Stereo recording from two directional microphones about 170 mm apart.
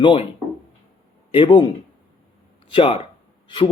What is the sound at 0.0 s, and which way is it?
Speech, 30° left (ahead or behind).